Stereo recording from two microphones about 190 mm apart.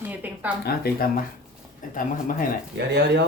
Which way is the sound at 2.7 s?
65° right (ahead or behind).